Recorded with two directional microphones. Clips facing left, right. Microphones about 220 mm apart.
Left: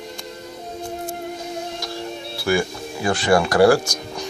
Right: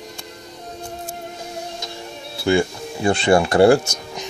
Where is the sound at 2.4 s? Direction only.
25° right (ahead or behind).